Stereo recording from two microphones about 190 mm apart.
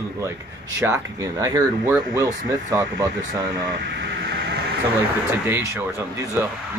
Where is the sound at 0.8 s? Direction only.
10° right (ahead or behind).